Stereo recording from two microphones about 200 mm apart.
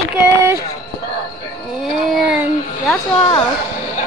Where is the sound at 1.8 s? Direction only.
Centre (ahead or behind).